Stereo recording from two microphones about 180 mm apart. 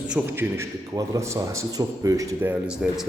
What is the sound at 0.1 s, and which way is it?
A man's voice, 10° right (ahead or behind).